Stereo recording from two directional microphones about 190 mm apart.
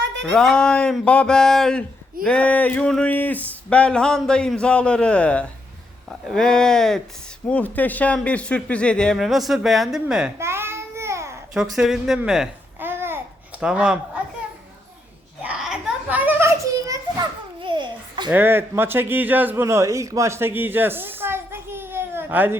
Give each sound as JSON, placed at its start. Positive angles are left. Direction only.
{"t": 0.3, "sound": "a man's voice", "side_deg": 5}
{"t": 11.5, "sound": "a man's voice", "side_deg": 0}
{"t": 15.4, "sound": "a sound", "side_deg": -5}
{"t": 17.6, "sound": "babbling", "side_deg": -25}
{"t": 18.3, "sound": "a man's voice", "side_deg": -10}